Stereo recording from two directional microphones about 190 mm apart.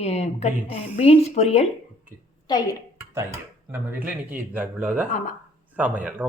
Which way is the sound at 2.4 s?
20° left (ahead or behind).